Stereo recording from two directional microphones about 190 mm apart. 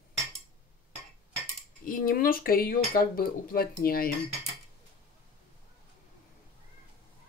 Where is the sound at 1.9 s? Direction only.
45° left (ahead or behind).